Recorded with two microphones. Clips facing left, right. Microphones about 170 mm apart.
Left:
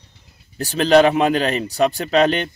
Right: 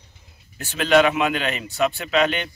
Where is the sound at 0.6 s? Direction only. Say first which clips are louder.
Left 4 dB; 35° left (ahead or behind).